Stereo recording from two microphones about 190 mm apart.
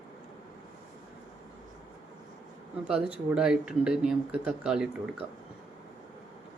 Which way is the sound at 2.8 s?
5° right (ahead or behind).